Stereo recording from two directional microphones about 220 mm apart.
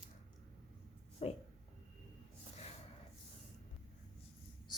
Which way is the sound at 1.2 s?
25° left (ahead or behind).